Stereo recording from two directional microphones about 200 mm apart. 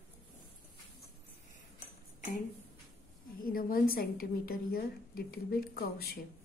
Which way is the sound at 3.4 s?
45° left (ahead or behind).